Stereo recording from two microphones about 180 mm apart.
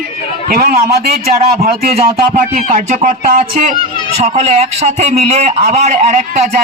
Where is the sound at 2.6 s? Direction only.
40° right (ahead or behind).